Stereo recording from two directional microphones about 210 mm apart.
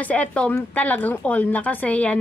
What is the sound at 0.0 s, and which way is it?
Speech, 5° left (ahead or behind).